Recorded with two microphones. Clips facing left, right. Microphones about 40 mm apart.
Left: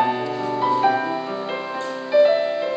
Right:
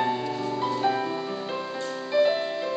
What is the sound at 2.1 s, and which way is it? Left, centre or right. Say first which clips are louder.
Music: left 7 dB; centre.